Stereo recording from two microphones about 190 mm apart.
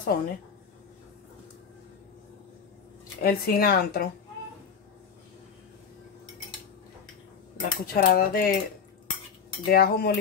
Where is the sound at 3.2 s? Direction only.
55° left (ahead or behind).